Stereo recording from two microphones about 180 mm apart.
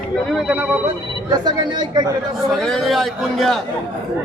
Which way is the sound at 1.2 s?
20° right (ahead or behind).